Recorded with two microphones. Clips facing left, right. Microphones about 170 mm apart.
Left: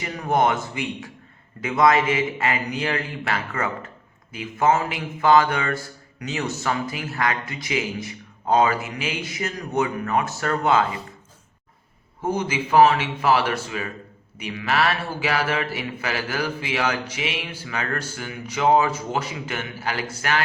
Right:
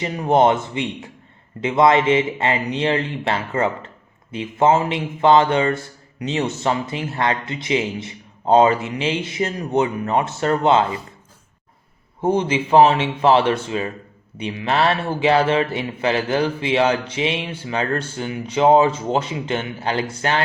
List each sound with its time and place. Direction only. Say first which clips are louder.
0.0 s speech: right 5 dB; 25° right (ahead or behind)
12.2 s speech: right 6 dB; 25° right (ahead or behind)